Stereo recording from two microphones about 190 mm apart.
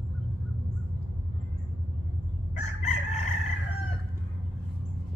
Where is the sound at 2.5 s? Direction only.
35° left (ahead or behind).